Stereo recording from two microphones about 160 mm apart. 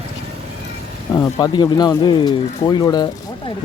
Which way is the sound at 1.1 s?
25° left (ahead or behind).